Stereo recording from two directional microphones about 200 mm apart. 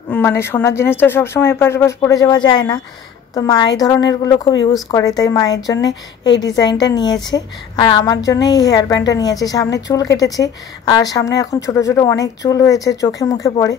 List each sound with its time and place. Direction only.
0.1 s a woman's voice: 10° left (ahead or behind)